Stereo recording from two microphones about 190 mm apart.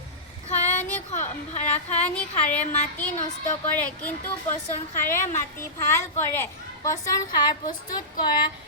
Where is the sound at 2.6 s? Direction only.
40° left (ahead or behind).